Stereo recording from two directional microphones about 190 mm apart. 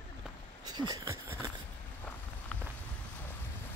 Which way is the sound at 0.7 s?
20° right (ahead or behind).